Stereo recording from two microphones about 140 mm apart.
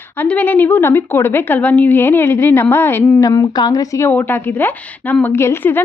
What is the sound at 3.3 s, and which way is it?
A woman's voice, 30° left (ahead or behind).